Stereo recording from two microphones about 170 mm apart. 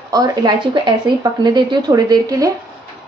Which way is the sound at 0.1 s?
20° right (ahead or behind).